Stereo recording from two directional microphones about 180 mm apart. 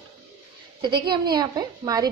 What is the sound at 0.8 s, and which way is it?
Speech, 25° right (ahead or behind).